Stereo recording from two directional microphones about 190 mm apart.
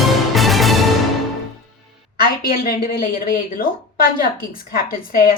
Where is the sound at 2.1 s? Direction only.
50° left (ahead or behind).